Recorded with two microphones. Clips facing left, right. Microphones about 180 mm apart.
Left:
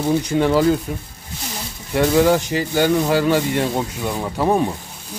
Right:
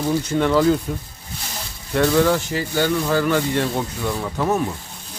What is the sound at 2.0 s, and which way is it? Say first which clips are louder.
Speech: left 2 dB; 15° left (ahead or behind).